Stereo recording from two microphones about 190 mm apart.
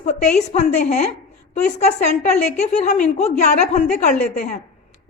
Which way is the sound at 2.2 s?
35° left (ahead or behind).